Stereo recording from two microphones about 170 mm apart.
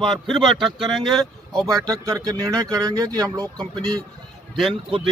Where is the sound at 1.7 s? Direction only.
20° right (ahead or behind).